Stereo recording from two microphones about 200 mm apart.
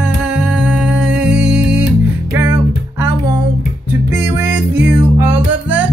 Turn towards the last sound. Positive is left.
turn(degrees=-10)  # may be behind; listen again after turning